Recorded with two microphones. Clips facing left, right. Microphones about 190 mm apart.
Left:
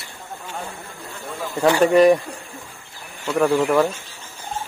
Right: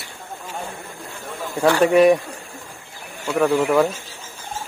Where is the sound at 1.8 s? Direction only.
Centre (ahead or behind).